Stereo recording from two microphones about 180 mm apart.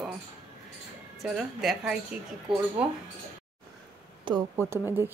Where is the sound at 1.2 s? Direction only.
Centre (ahead or behind).